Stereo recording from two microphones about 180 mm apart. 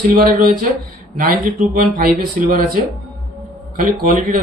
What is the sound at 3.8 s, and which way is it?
Speech, 50° right (ahead or behind).